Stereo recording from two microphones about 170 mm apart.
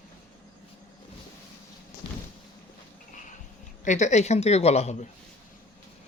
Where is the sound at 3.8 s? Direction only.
45° left (ahead or behind).